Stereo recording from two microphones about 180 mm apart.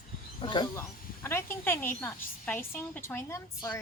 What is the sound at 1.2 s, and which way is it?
A woman's voice, 15° left (ahead or behind).